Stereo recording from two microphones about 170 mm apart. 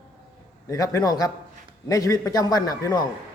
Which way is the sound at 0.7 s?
20° left (ahead or behind).